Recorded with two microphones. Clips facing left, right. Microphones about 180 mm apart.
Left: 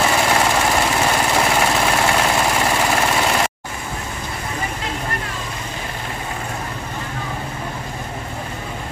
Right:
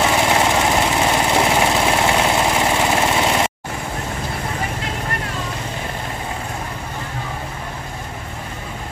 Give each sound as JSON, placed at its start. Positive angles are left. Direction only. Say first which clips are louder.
{"t": 0.0, "sound": "lawn mower", "louder": "right 1 dB", "side_deg": -15}